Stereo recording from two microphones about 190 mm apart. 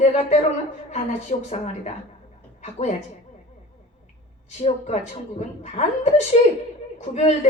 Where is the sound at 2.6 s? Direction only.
40° left (ahead or behind).